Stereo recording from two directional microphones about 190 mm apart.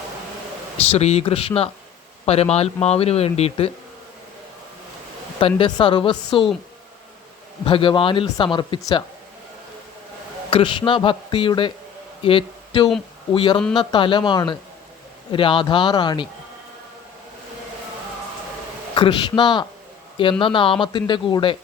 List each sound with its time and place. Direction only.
0.9 s speech: 35° left (ahead or behind)
5.4 s a man's voice: 30° left (ahead or behind)
7.6 s a man's voice: 25° left (ahead or behind)
10.5 s a man's voice: 25° left (ahead or behind)
18.9 s a man's voice: 25° left (ahead or behind)